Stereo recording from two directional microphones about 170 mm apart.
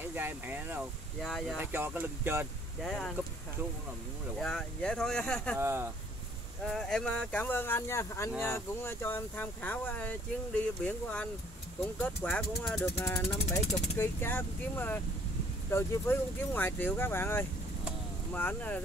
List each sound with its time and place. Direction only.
0.1 s speech: 10° right (ahead or behind)
1.2 s speech: centre (ahead or behind)
1.6 s speech: 10° right (ahead or behind)
2.8 s speech: 5° left (ahead or behind)
4.4 s speech: 5° left (ahead or behind)
5.6 s speech: 15° right (ahead or behind)
6.6 s speech: centre (ahead or behind)